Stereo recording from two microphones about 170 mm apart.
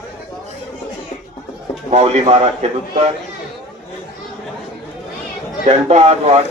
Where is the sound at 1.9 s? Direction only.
40° right (ahead or behind).